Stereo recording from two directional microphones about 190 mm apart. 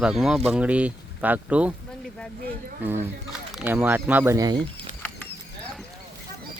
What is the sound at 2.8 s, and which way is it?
Speech, 10° right (ahead or behind).